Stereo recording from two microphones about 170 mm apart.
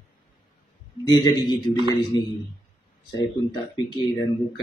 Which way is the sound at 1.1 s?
25° left (ahead or behind).